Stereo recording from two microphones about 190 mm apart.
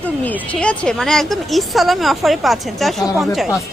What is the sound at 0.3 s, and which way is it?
Speech, 5° left (ahead or behind).